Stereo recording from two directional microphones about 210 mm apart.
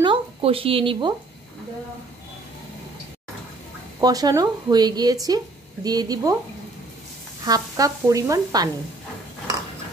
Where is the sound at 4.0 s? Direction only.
20° right (ahead or behind).